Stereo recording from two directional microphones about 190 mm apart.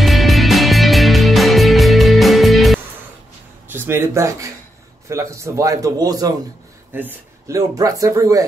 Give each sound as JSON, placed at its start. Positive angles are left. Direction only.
{"t": 0.0, "sound": "music", "side_deg": 0}
{"t": 3.6, "sound": "speech", "side_deg": -10}